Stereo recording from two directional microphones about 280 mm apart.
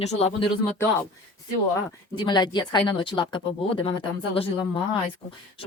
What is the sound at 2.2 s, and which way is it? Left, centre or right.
Speech, centre.